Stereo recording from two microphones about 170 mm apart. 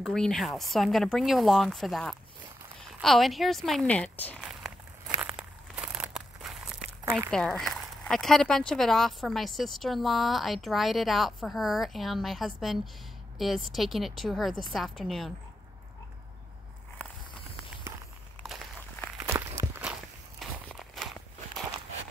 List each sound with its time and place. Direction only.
0.0 s speech: 5° left (ahead or behind)
4.5 s a sound: 5° right (ahead or behind)
7.2 s speech: 5° left (ahead or behind)
19.2 s walk: 15° right (ahead or behind)
20.3 s walk: centre (ahead or behind)